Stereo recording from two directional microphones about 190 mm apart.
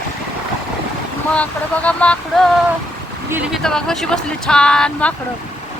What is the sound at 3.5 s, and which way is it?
Speech, 5° left (ahead or behind).